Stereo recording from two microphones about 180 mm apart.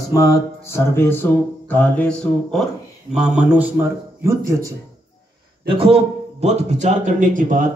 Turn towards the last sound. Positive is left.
turn(degrees=-45)  # may be behind; listen again after turning